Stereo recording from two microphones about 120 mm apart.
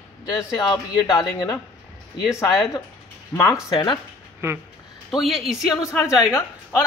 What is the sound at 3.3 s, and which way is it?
Speech, 25° left (ahead or behind).